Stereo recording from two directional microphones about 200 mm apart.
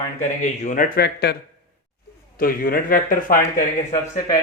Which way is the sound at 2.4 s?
45° left (ahead or behind).